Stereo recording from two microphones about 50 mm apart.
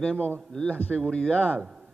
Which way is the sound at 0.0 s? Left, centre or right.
Centre.